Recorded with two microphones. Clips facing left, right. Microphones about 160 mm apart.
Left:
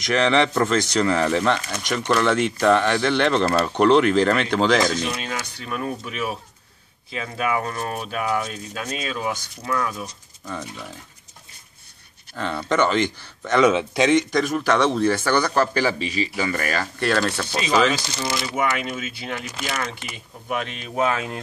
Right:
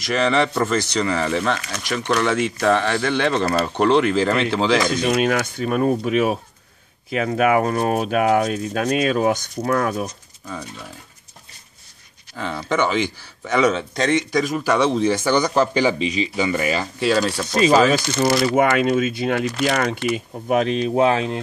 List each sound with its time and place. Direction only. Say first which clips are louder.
0.0 s speech: even; 5° right (ahead or behind)
4.9 s speech: right 8 dB; 60° right (ahead or behind)
7.1 s speech: right 7 dB; 55° right (ahead or behind)
7.7 s speech: right 9 dB; 45° right (ahead or behind)
10.4 s speech: even; 5° right (ahead or behind)
12.4 s a man's voice: even; 5° right (ahead or behind)
14.3 s a man's voice: right 1 dB; 10° right (ahead or behind)
17.9 s speech: right 9 dB; 55° right (ahead or behind); by 21.4 s 30° right (ahead or behind)